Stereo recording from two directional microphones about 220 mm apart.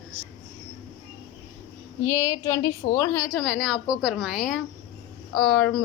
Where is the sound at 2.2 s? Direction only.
15° left (ahead or behind).